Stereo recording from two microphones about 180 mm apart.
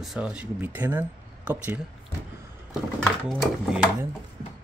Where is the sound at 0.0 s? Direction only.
5° right (ahead or behind).